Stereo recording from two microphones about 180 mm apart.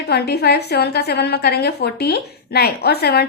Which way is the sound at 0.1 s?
65° left (ahead or behind).